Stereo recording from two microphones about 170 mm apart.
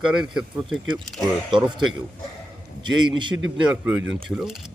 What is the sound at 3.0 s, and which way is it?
Speech, 30° right (ahead or behind).